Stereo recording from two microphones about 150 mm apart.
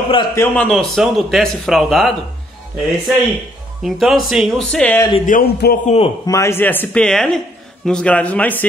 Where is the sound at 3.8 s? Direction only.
Centre (ahead or behind).